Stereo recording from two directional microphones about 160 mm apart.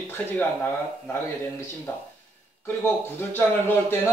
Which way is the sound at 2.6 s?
15° left (ahead or behind).